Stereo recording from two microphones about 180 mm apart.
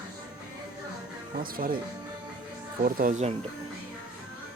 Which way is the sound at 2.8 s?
50° right (ahead or behind).